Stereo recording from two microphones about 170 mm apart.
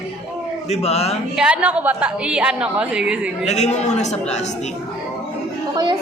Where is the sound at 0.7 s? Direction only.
40° left (ahead or behind).